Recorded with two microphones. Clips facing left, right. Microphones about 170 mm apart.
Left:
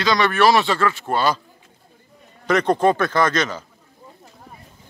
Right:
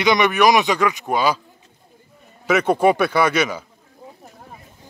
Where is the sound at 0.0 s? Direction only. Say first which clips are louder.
Right 1 dB; 20° right (ahead or behind).